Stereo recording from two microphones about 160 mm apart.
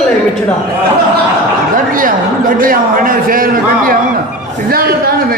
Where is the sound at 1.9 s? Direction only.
60° right (ahead or behind).